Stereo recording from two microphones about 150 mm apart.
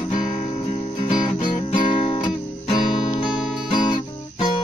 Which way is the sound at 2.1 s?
35° left (ahead or behind).